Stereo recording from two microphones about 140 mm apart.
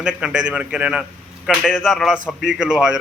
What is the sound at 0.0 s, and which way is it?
A man's voice, 5° right (ahead or behind).